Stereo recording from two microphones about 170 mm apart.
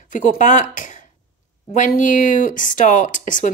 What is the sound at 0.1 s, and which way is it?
Speech, 50° left (ahead or behind).